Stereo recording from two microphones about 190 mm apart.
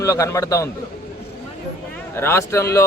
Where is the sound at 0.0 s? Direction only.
15° left (ahead or behind).